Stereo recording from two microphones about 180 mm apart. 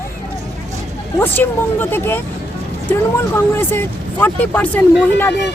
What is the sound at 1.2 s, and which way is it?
Speech, 10° left (ahead or behind).